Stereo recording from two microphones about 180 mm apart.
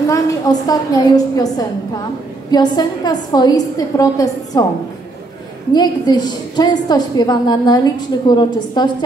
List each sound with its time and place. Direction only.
0.1 s a woman's voice: 20° left (ahead or behind)
5.7 s a woman's voice: 25° left (ahead or behind)